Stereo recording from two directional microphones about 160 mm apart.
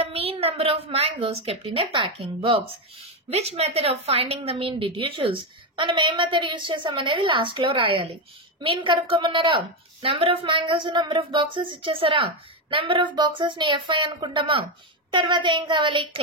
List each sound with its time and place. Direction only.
0.0 s a woman's voice: 35° right (ahead or behind)